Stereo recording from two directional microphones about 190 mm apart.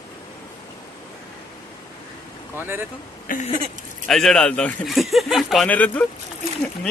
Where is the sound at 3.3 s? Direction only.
45° left (ahead or behind).